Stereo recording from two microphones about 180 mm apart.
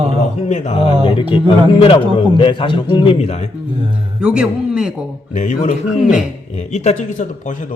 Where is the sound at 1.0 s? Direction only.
30° left (ahead or behind).